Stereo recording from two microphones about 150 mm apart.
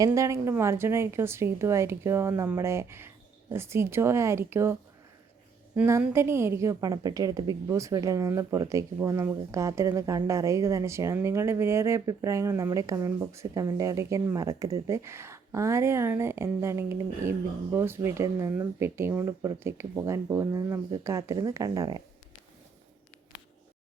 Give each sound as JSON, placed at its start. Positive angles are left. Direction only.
{"t": 0.0, "sound": "a woman's voice", "side_deg": -20}